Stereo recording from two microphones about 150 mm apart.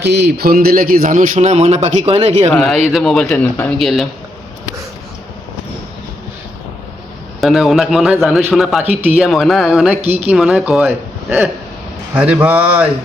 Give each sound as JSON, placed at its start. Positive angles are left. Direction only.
{"t": 0.2, "sound": "a man's voice", "side_deg": -90}
{"t": 2.5, "sound": "speech", "side_deg": 0}
{"t": 7.4, "sound": "speech", "side_deg": 0}
{"t": 8.8, "sound": "speech", "side_deg": -45}
{"t": 9.0, "sound": "speech", "side_deg": -5}